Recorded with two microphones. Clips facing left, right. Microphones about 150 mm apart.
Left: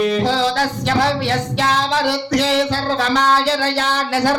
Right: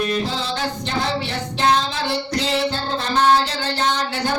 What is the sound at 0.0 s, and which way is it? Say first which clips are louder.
Music: left 6 dB; 90° left.